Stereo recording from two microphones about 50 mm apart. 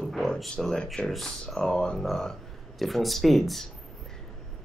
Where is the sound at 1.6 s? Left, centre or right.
Centre.